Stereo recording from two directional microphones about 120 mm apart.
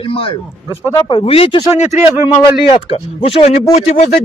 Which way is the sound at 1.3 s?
55° left (ahead or behind).